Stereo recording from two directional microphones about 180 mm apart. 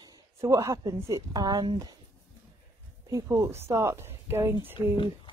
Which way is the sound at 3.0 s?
15° right (ahead or behind).